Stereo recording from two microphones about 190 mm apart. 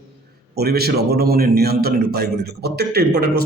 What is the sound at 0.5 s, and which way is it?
A man's voice, 55° right (ahead or behind).